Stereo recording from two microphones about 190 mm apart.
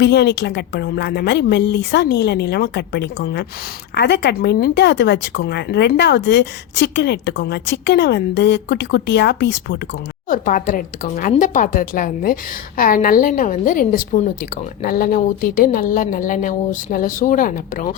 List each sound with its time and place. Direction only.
0.0 s speech: 60° left (ahead or behind)
10.2 s speech: 45° left (ahead or behind)